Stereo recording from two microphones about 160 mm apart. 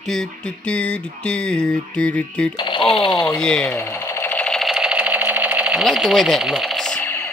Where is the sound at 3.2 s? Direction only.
5° left (ahead or behind).